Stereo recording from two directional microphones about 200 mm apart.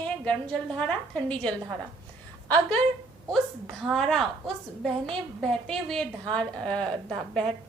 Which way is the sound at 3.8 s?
Centre (ahead or behind).